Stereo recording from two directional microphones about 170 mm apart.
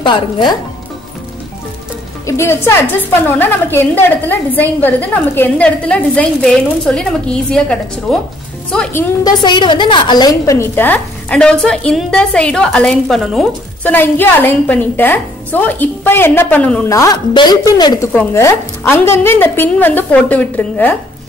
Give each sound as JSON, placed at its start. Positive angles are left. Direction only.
{"t": 0.0, "sound": "a woman's voice", "side_deg": 30}
{"t": 2.2, "sound": "a woman's voice", "side_deg": 15}
{"t": 9.2, "sound": "a woman's voice", "side_deg": 25}
{"t": 13.8, "sound": "a woman's voice", "side_deg": 10}
{"t": 16.9, "sound": "a woman's voice", "side_deg": 20}
{"t": 18.1, "sound": "a woman's voice", "side_deg": 10}